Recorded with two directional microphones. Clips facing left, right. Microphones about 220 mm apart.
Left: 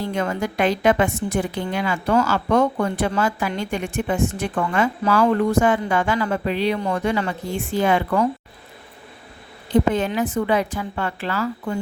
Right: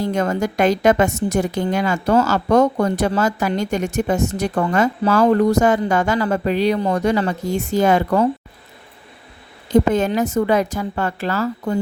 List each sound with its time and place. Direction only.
0.0 s a woman's voice: 40° right (ahead or behind)
9.6 s a woman's voice: 45° right (ahead or behind)